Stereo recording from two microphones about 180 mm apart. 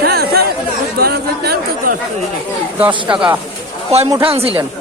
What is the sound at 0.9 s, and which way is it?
Speech, 60° right (ahead or behind).